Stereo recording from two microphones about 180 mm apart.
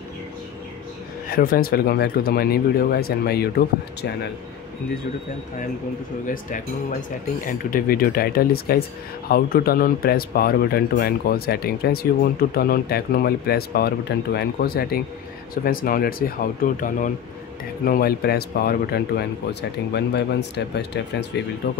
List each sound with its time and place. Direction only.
1.3 s speech: 55° left (ahead or behind)
6.2 s speech: 50° left (ahead or behind); by 21.8 s 70° left (ahead or behind)